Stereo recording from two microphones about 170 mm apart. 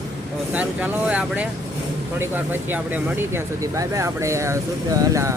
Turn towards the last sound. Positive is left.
turn(degrees=-20)  # may be behind; listen again after turning